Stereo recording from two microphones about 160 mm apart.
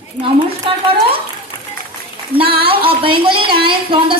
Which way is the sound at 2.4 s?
35° right (ahead or behind).